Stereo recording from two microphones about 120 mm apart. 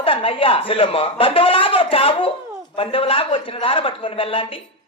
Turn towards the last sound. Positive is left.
turn(degrees=50)  # may be behind; listen again after turning